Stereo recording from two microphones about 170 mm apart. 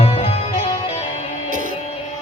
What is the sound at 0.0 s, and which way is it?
Music, 35° left (ahead or behind).